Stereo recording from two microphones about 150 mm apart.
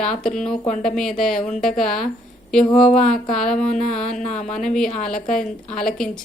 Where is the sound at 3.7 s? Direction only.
55° left (ahead or behind).